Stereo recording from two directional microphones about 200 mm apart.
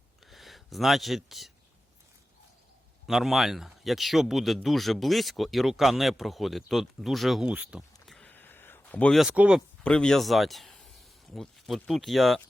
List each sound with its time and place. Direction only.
0.3 s speech: centre (ahead or behind)
3.1 s speech: centre (ahead or behind)
8.0 s a sound: 5° left (ahead or behind)
9.8 s a man's voice: 5° left (ahead or behind)